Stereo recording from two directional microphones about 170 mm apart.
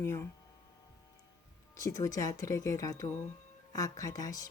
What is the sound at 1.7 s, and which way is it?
Speech, 20° left (ahead or behind).